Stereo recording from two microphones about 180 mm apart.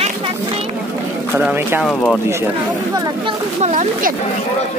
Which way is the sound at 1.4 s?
10° right (ahead or behind).